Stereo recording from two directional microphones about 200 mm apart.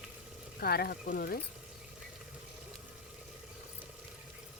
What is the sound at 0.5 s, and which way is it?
Speech, 50° left (ahead or behind).